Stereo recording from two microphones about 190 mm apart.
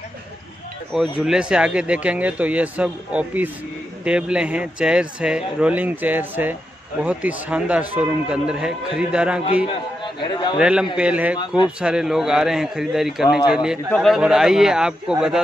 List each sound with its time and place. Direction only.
1.1 s speech: 5° right (ahead or behind)
9.7 s a man's voice: 25° left (ahead or behind)
10.6 s speech: 5° right (ahead or behind)
11.3 s speech: 25° left (ahead or behind)
11.8 s speech: 5° right (ahead or behind)